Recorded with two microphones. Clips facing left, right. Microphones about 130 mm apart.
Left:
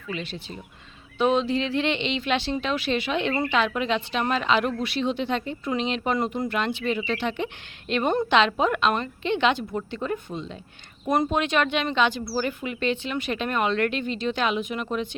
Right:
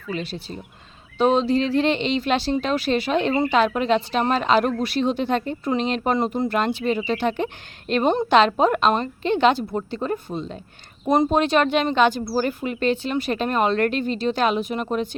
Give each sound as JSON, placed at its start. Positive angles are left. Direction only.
{"t": 0.1, "sound": "speech", "side_deg": -40}
{"t": 8.0, "sound": "a woman's voice", "side_deg": -25}
{"t": 8.3, "sound": "speech", "side_deg": -40}
{"t": 11.0, "sound": "speech", "side_deg": -20}
{"t": 11.3, "sound": "speech", "side_deg": -35}